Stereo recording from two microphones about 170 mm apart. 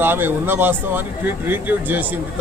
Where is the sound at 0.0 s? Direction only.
10° right (ahead or behind).